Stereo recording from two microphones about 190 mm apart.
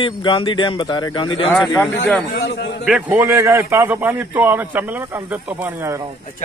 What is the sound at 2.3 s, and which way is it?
Speech, 60° left (ahead or behind).